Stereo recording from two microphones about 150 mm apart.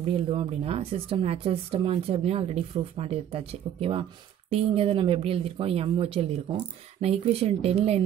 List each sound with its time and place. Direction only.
0.1 s speech: 35° right (ahead or behind)